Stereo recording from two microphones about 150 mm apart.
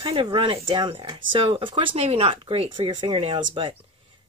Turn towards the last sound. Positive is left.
turn(degrees=-35)  # may be behind; listen again after turning